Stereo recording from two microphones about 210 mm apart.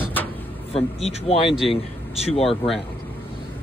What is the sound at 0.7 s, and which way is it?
Speech, 25° left (ahead or behind).